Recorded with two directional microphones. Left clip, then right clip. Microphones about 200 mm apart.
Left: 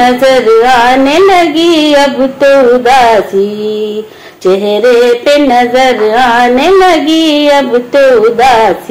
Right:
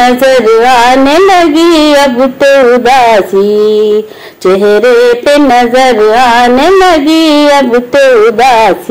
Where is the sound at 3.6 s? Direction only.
45° right (ahead or behind).